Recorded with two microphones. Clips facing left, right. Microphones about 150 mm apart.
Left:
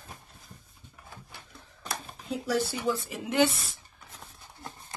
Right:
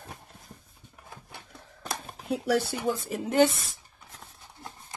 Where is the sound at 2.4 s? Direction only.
55° right (ahead or behind).